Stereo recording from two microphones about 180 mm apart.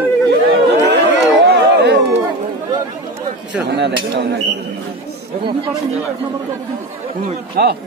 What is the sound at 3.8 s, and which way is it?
Speech, 70° right (ahead or behind).